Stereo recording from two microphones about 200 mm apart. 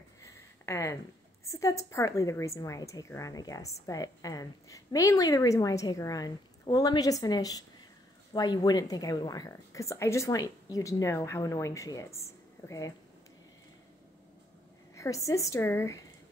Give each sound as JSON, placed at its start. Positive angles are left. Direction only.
{"t": 0.2, "sound": "a sound", "side_deg": 15}
{"t": 1.5, "sound": "a woman's voice", "side_deg": 15}
{"t": 15.0, "sound": "a woman's voice", "side_deg": 15}